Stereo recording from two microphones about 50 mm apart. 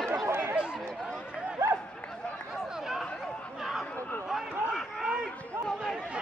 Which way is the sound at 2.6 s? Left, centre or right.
Centre.